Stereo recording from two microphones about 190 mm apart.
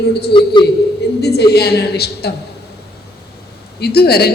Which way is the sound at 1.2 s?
60° left (ahead or behind).